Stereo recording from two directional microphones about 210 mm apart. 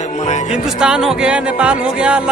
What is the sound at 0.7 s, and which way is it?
Speech, 5° right (ahead or behind).